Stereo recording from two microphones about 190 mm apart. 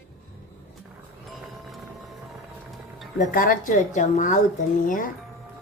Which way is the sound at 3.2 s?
50° left (ahead or behind).